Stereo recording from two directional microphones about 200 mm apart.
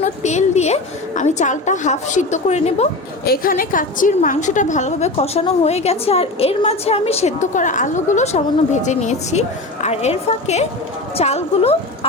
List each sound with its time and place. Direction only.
0.0 s a woman's voice: 35° left (ahead or behind)
3.2 s a woman's voice: 45° left (ahead or behind); by 11.8 s 30° left (ahead or behind)